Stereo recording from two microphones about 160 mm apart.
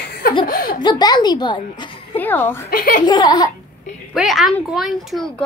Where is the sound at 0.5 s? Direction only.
65° left (ahead or behind).